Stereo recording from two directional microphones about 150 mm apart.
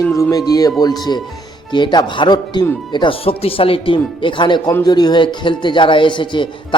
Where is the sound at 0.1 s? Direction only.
20° left (ahead or behind).